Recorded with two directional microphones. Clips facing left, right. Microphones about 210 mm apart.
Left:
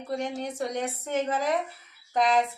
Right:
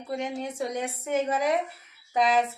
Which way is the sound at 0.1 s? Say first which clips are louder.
Even; 5° right (ahead or behind).